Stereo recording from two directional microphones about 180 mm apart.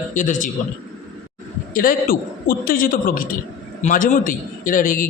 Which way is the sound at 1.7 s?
50° left (ahead or behind).